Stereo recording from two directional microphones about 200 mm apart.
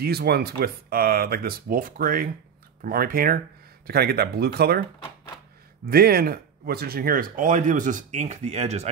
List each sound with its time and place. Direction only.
0.0 s speech: 50° right (ahead or behind)
5.9 s speech: 50° right (ahead or behind); by 8.9 s 35° right (ahead or behind)